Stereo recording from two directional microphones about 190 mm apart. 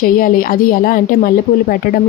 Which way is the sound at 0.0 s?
50° left (ahead or behind).